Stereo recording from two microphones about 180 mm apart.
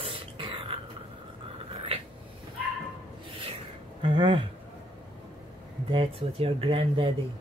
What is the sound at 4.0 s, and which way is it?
Speech, 25° right (ahead or behind).